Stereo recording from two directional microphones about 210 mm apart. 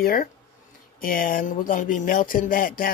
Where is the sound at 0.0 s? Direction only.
45° left (ahead or behind).